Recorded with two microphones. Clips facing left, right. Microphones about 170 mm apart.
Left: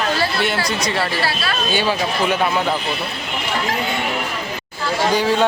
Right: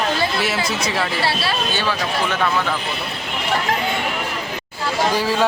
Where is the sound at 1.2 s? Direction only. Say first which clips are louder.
Right 1 dB; 30° right (ahead or behind).